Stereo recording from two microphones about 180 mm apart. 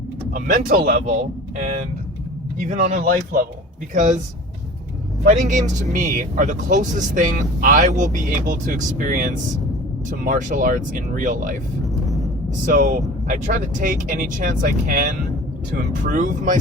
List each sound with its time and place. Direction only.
0.3 s speech: 50° right (ahead or behind)
5.3 s speech: 45° right (ahead or behind)
12.6 s speech: 50° right (ahead or behind)